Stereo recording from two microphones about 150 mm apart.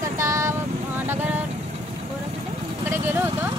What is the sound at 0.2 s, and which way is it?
Vehicle, 20° right (ahead or behind).